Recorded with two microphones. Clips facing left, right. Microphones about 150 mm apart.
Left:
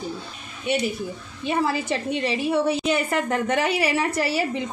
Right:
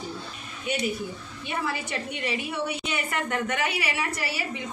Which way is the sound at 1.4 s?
30° left (ahead or behind).